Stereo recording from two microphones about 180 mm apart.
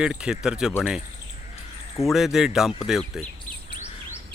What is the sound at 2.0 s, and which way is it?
Speech, centre (ahead or behind).